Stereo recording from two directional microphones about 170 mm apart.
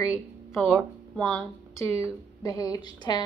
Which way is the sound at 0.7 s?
5° left (ahead or behind).